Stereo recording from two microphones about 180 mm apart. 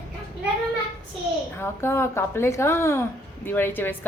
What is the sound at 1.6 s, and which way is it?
A woman's voice, 15° left (ahead or behind).